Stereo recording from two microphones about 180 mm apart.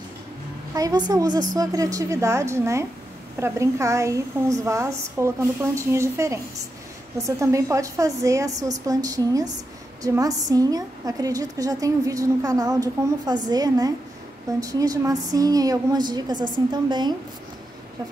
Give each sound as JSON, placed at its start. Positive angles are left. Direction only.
{"t": 0.7, "sound": "a woman's voice", "side_deg": -20}